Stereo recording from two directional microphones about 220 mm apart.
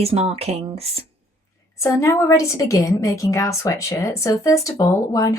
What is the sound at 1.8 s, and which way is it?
A woman's voice, 15° left (ahead or behind).